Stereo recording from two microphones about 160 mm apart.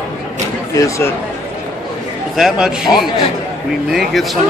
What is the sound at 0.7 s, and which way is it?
Speech, 20° left (ahead or behind).